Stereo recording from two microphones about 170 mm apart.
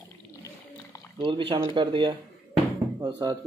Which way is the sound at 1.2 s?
30° right (ahead or behind).